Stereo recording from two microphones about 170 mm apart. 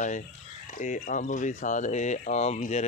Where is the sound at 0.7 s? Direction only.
50° left (ahead or behind).